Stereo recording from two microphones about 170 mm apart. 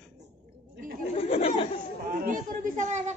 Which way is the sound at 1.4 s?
35° left (ahead or behind).